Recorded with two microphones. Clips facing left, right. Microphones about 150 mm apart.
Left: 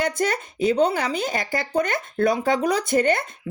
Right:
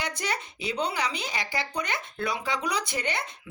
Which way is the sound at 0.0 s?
50° left (ahead or behind).